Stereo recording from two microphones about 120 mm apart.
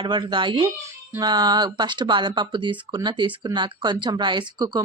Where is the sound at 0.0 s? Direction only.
40° right (ahead or behind).